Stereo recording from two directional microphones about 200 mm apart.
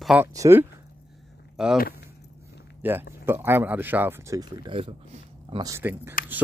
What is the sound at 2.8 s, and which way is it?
Speech, 10° right (ahead or behind).